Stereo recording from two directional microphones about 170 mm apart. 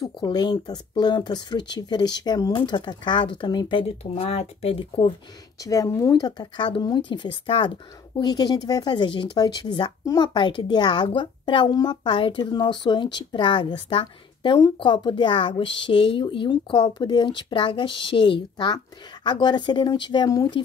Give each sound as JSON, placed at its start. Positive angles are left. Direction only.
{"t": 0.0, "sound": "speech", "side_deg": 25}
{"t": 5.6, "sound": "speech", "side_deg": 20}